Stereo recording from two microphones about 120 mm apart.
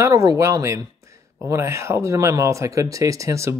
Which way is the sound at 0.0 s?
30° right (ahead or behind).